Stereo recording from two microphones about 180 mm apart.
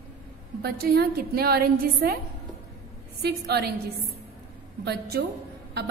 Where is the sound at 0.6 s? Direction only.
60° right (ahead or behind).